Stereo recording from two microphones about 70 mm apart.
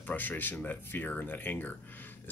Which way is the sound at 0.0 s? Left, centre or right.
Left.